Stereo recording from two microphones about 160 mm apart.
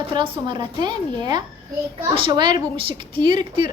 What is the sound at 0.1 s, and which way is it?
A child's voice, 30° right (ahead or behind).